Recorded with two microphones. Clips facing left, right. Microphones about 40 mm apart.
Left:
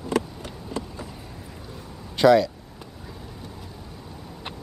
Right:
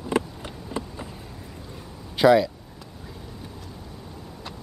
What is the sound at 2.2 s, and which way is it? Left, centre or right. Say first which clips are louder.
Speech: even; centre.